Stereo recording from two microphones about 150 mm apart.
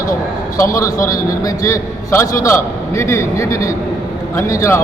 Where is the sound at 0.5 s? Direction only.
20° left (ahead or behind).